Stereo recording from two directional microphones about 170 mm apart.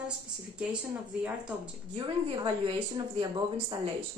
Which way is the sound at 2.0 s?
30° right (ahead or behind).